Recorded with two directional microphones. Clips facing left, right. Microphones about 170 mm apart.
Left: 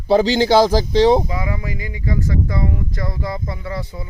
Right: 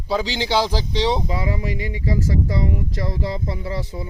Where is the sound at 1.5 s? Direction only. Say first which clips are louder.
Right 2 dB; 30° right (ahead or behind).